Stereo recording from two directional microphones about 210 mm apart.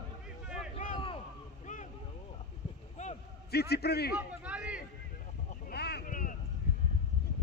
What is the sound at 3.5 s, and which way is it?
Speech, 50° left (ahead or behind).